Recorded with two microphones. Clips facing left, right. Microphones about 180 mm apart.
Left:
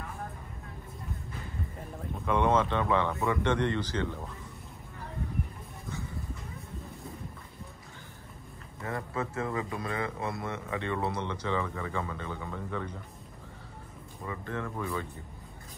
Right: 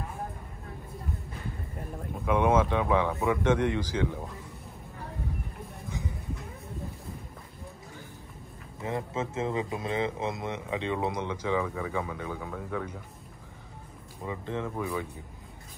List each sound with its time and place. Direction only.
2.2 s speech: 10° right (ahead or behind)
5.9 s a sound: 15° right (ahead or behind)
8.8 s speech: 20° right (ahead or behind)
14.2 s speech: 15° right (ahead or behind)